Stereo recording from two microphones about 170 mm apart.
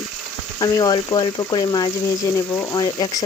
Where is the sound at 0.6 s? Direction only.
25° left (ahead or behind).